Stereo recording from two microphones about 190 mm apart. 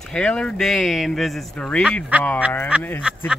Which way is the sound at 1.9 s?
10° right (ahead or behind).